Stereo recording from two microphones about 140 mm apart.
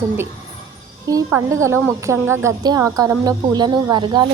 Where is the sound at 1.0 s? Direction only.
20° right (ahead or behind).